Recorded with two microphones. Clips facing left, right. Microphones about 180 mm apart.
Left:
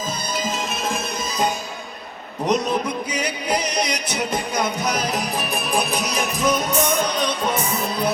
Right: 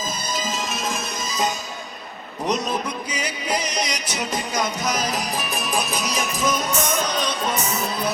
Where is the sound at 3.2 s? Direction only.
60° left (ahead or behind).